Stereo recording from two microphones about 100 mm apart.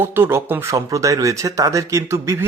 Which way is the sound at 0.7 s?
30° right (ahead or behind).